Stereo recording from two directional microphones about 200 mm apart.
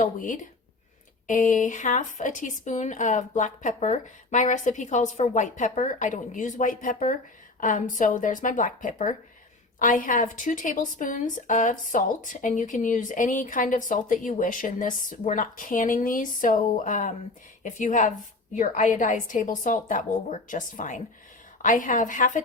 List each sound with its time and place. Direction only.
0.0 s a woman's voice: 40° left (ahead or behind)